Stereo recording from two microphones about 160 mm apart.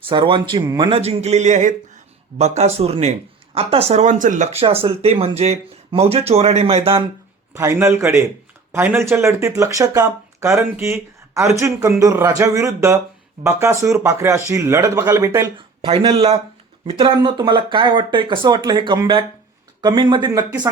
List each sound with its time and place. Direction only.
0.1 s speech: 30° right (ahead or behind); by 4.4 s 50° right (ahead or behind)
4.5 s speech: 35° right (ahead or behind)
7.5 s speech: 15° right (ahead or behind)
15.5 s speech: 35° right (ahead or behind)